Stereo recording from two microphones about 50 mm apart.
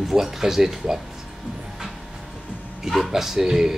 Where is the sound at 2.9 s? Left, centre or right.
Centre.